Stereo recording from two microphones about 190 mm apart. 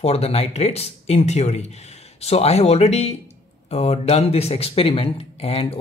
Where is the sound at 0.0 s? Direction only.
35° left (ahead or behind).